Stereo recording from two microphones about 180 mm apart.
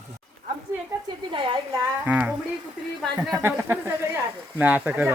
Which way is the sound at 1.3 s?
30° right (ahead or behind).